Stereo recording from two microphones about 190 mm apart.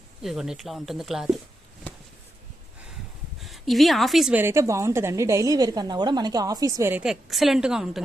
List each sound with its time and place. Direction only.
0.2 s speech: centre (ahead or behind)
3.4 s a woman's voice: centre (ahead or behind); by 7.0 s 15° right (ahead or behind)
7.0 s speech: centre (ahead or behind)